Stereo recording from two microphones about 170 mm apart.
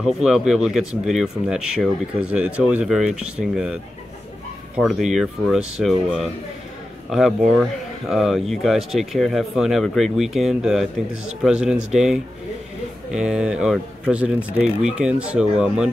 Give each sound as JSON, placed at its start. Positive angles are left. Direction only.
{"t": 0.0, "sound": "speech", "side_deg": 0}
{"t": 4.7, "sound": "speech", "side_deg": -5}